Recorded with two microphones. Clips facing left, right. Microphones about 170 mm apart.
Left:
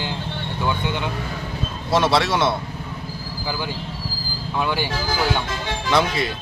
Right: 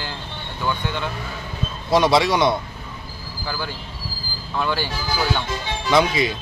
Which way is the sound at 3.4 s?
15° left (ahead or behind).